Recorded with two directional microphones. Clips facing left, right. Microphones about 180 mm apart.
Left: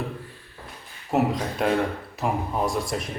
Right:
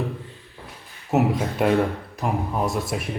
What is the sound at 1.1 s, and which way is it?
Speech, 5° right (ahead or behind).